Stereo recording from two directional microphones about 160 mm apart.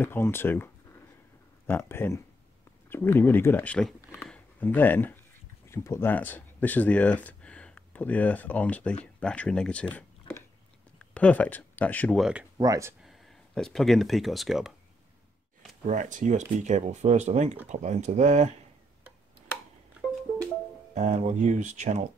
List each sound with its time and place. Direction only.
0.0 s speech: 15° left (ahead or behind)
12.2 s speech: 5° right (ahead or behind)
12.5 s speech: 20° right (ahead or behind)
13.0 s speech: centre (ahead or behind)
15.9 s speech: 50° right (ahead or behind)
20.9 s speech: 45° right (ahead or behind)